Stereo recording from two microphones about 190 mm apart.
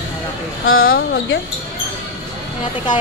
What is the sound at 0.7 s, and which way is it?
Speech, 55° left (ahead or behind).